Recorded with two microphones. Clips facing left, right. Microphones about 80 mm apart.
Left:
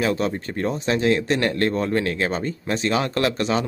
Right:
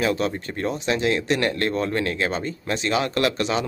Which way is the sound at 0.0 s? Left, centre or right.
Left.